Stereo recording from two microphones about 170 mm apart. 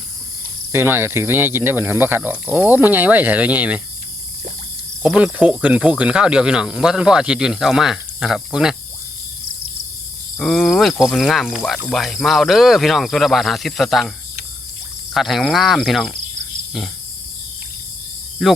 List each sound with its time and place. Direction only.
0.7 s speech: 10° right (ahead or behind)
5.0 s speech: 5° right (ahead or behind)
10.3 s speech: centre (ahead or behind)
15.1 s speech: centre (ahead or behind)
18.4 s speech: centre (ahead or behind)